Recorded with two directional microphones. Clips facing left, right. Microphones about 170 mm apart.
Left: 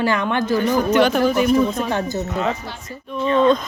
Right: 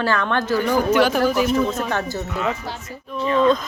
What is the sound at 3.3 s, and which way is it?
Speech, 30° left (ahead or behind).